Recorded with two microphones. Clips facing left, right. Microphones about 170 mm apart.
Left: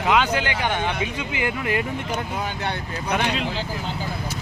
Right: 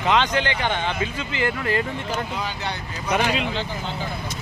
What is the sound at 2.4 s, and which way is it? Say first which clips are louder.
Speech: left 2 dB; 55° left (ahead or behind).